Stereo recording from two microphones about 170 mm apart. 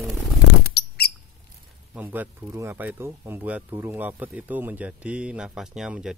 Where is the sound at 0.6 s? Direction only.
70° left (ahead or behind).